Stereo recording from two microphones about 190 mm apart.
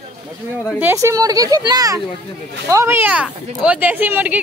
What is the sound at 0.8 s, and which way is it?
A woman's voice, 15° right (ahead or behind).